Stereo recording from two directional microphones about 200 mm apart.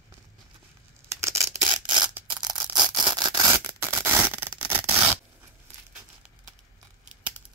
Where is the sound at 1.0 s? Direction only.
15° right (ahead or behind).